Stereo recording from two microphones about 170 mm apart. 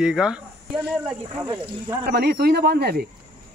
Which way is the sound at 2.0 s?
70° right (ahead or behind).